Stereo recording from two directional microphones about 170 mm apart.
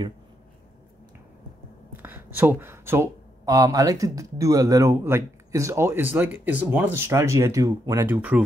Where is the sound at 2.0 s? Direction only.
10° right (ahead or behind).